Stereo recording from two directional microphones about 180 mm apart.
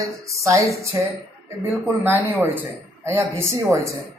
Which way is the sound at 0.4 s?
15° right (ahead or behind).